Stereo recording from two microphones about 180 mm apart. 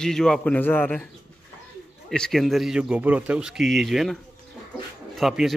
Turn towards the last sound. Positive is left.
turn(degrees=0)  # may be behind; listen again after turning